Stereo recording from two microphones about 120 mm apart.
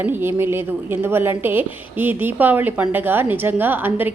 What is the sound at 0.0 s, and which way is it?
A woman's voice, 20° right (ahead or behind).